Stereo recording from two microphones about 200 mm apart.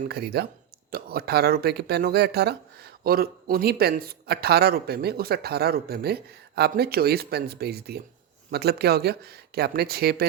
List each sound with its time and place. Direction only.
0.1 s speech: 55° right (ahead or behind)